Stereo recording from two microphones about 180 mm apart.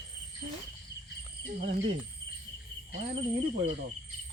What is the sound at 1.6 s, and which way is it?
Speech, 45° right (ahead or behind).